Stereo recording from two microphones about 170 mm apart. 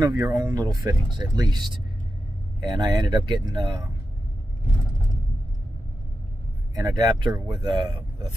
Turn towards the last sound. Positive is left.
turn(degrees=-25)  # may be behind; listen again after turning